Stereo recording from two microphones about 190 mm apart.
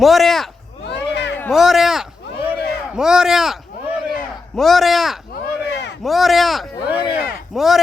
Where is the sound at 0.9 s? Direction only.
65° left (ahead or behind).